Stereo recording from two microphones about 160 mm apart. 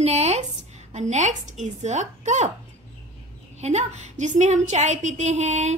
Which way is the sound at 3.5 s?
45° right (ahead or behind).